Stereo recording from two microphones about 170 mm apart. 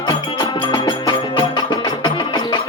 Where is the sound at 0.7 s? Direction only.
25° left (ahead or behind).